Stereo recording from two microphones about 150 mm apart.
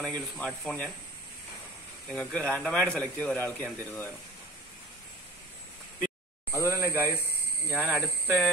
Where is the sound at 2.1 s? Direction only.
10° left (ahead or behind).